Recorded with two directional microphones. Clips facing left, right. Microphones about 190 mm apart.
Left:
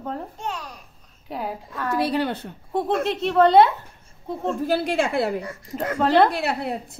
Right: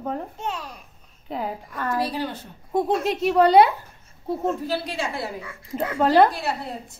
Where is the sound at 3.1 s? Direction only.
5° right (ahead or behind).